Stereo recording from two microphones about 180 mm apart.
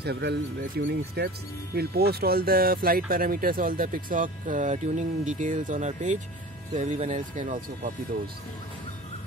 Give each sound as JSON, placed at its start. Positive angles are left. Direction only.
{"t": 0.0, "sound": "speech", "side_deg": -65}